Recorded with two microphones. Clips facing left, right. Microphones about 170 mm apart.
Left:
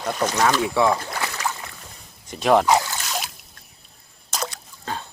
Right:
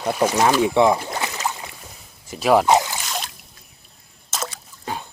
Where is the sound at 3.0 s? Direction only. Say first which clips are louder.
Even; centre (ahead or behind).